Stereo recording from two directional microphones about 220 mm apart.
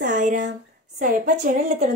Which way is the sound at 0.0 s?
35° right (ahead or behind).